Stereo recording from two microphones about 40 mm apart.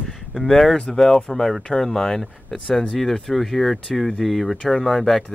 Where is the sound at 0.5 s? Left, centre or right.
Centre.